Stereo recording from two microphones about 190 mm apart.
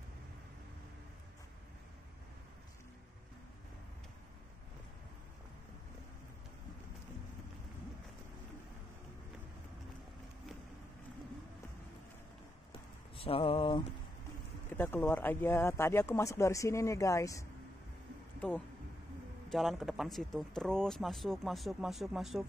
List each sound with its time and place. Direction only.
12.7 s a sound: 30° left (ahead or behind)
14.7 s speech: 10° left (ahead or behind)
19.5 s speech: centre (ahead or behind)